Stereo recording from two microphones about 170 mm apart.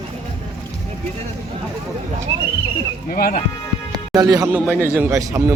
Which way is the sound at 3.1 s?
60° left (ahead or behind).